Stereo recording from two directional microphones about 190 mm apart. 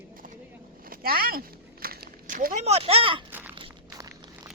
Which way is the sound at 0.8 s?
50° right (ahead or behind).